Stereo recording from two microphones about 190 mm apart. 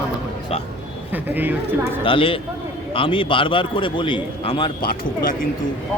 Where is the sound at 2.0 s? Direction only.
25° left (ahead or behind).